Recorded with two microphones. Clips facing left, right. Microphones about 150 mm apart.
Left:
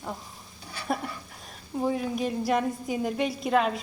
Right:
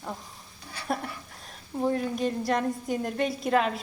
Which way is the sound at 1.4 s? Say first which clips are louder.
Even; centre (ahead or behind).